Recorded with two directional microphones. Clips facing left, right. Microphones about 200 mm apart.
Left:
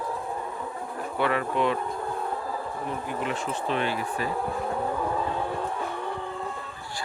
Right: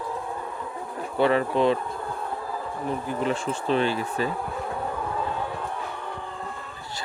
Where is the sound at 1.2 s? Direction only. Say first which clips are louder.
Right 5 dB; 30° right (ahead or behind).